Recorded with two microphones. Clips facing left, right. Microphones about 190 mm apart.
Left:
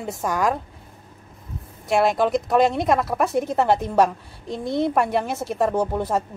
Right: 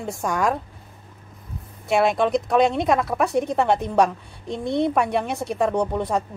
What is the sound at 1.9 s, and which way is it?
Speech, centre (ahead or behind).